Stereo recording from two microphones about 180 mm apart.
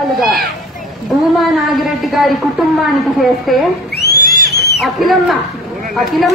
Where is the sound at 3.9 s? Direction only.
65° left (ahead or behind).